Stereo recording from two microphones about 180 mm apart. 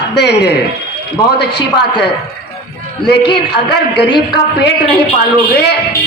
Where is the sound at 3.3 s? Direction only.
65° left (ahead or behind).